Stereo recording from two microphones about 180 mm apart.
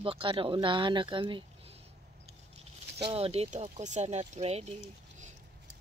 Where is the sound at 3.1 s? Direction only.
30° right (ahead or behind).